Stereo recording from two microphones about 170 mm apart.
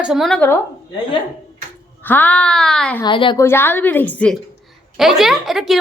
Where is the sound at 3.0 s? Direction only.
30° left (ahead or behind).